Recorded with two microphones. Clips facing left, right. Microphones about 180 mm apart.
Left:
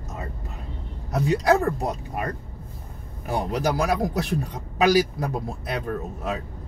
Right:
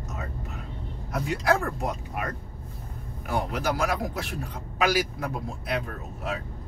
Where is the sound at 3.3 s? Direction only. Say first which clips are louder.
Left 3 dB; 35° left (ahead or behind).